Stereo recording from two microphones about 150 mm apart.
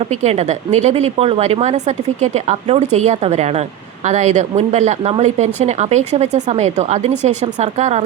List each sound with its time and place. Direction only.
0.1 s a woman's voice: 45° right (ahead or behind)